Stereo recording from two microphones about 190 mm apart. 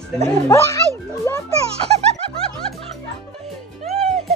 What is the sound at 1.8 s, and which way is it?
Snicker, 30° right (ahead or behind).